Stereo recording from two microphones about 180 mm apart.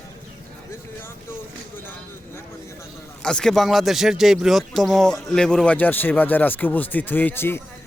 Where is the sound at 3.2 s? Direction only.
5° left (ahead or behind).